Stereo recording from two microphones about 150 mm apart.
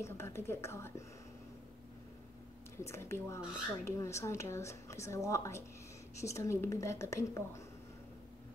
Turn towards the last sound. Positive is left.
turn(degrees=20)  # may be behind; listen again after turning